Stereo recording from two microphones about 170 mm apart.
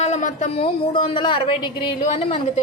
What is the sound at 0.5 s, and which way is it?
A woman's voice, 30° left (ahead or behind).